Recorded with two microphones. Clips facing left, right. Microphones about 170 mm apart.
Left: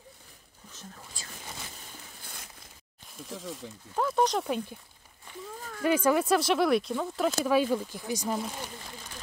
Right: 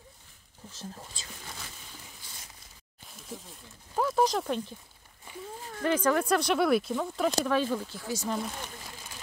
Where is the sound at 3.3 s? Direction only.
90° left.